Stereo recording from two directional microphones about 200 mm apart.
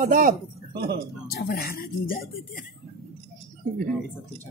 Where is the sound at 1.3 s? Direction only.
50° left (ahead or behind).